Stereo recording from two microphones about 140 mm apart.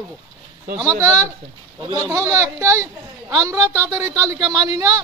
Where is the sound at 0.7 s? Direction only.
20° right (ahead or behind).